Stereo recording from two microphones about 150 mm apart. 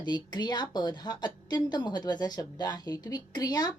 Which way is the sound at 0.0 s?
30° left (ahead or behind).